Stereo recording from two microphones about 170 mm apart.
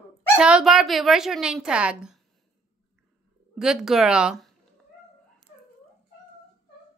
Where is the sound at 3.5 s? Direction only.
5° right (ahead or behind).